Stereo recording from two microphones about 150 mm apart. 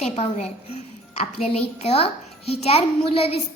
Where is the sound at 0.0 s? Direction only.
45° left (ahead or behind).